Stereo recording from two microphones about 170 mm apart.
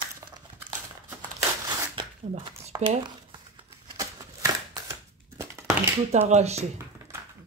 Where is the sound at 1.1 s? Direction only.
25° right (ahead or behind).